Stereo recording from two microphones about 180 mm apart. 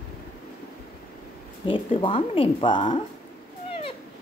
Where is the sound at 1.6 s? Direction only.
30° left (ahead or behind).